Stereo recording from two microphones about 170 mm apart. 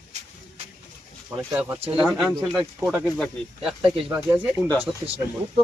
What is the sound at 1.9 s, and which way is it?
Speech, centre (ahead or behind).